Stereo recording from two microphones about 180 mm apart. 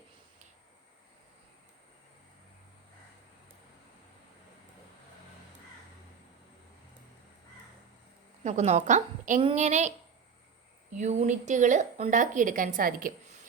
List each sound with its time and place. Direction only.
8.4 s a woman's voice: 40° right (ahead or behind)
10.9 s a woman's voice: 40° right (ahead or behind)